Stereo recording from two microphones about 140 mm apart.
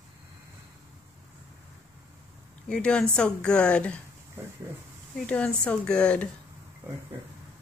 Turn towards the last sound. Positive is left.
turn(degrees=-15)  # may be behind; listen again after turning